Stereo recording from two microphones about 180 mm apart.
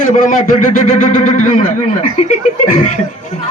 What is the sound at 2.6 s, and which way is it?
Speech, 50° left (ahead or behind).